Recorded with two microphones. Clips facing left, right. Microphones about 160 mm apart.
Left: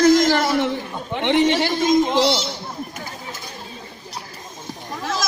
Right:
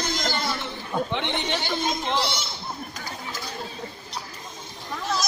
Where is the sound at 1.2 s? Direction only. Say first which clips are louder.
Left 12 dB; 90° left.